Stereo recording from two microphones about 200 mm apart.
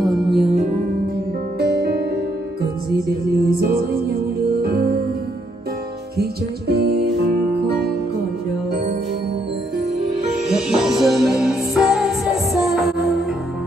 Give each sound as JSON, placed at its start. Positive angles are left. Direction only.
{"t": 0.0, "sound": "music", "side_deg": 0}
{"t": 0.4, "sound": "music", "side_deg": -35}
{"t": 1.6, "sound": "music", "side_deg": -55}
{"t": 3.4, "sound": "music", "side_deg": -50}
{"t": 6.7, "sound": "music", "side_deg": -50}
{"t": 10.5, "sound": "music", "side_deg": -5}